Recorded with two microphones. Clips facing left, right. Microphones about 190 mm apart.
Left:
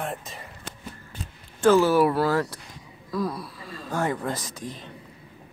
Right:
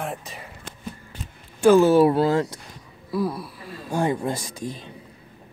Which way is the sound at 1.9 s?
25° right (ahead or behind).